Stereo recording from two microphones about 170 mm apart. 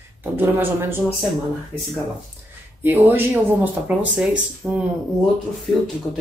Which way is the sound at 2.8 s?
10° right (ahead or behind).